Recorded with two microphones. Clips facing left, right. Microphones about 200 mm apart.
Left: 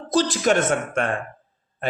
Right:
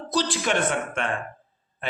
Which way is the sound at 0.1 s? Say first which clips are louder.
Left 6 dB; 45° left (ahead or behind).